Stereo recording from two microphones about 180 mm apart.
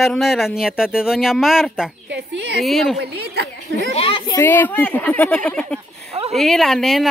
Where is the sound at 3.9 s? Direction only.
30° left (ahead or behind).